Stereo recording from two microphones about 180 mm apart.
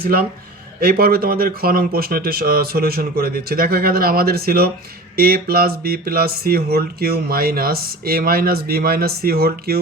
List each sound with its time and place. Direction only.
0.0 s speech: 55° right (ahead or behind)